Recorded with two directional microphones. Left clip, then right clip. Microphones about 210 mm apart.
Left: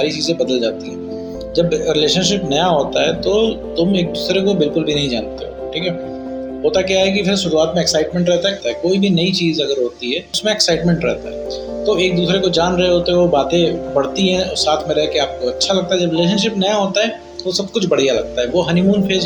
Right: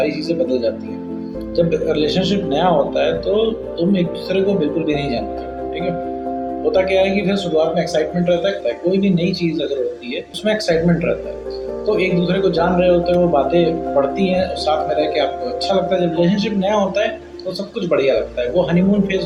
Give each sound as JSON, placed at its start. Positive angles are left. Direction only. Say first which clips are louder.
{"t": 0.0, "sound": "speech", "louder": "left 1 dB", "side_deg": 50}
{"t": 6.7, "sound": "speech", "louder": "left 1 dB", "side_deg": 45}